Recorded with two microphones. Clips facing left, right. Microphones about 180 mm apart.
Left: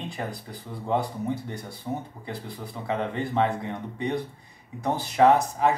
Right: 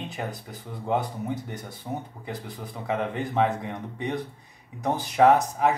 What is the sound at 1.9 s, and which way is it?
Speech, 10° right (ahead or behind).